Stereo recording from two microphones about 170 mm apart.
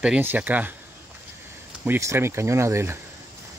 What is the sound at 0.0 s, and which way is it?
Speech, 10° right (ahead or behind).